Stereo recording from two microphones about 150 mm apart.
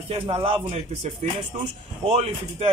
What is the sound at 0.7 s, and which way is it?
A man's voice, 50° right (ahead or behind).